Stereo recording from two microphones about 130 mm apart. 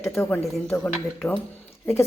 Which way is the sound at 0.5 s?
10° left (ahead or behind).